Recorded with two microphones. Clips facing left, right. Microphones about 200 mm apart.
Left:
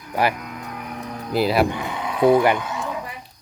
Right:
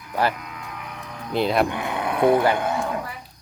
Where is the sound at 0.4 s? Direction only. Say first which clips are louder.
Left 4 dB; 45° left (ahead or behind).